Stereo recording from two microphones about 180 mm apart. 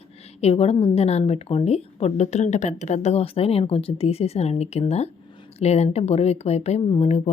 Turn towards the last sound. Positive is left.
turn(degrees=35)  # may be behind; listen again after turning